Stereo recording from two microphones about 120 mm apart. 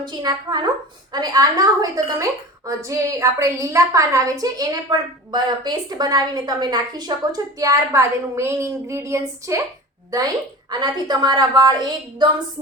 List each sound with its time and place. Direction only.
0.0 s a woman's voice: 35° right (ahead or behind)